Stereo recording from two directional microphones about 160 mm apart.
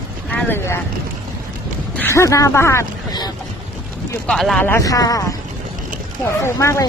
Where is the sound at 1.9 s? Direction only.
15° left (ahead or behind).